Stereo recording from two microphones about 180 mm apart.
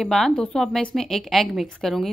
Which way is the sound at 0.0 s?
Centre (ahead or behind).